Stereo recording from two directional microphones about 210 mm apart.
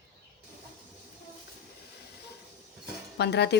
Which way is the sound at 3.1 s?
55° left (ahead or behind).